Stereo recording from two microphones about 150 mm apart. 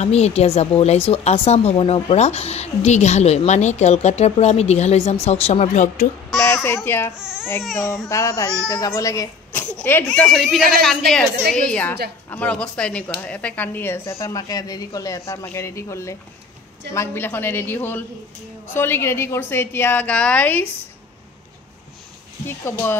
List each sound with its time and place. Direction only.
0.0 s a woman's voice: 45° left (ahead or behind)
6.4 s a child's voice: 15° left (ahead or behind)
7.2 s speech: 5° right (ahead or behind)
8.1 s a man's voice: 20° left (ahead or behind)
22.5 s a man's voice: 15° left (ahead or behind)